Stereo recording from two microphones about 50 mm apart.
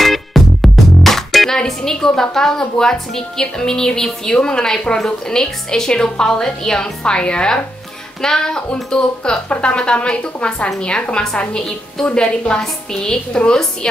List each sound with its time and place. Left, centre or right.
0.0 s music: centre
1.8 s a woman's voice: centre